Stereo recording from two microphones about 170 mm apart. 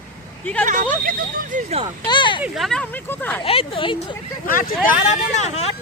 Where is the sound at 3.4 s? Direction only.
30° left (ahead or behind).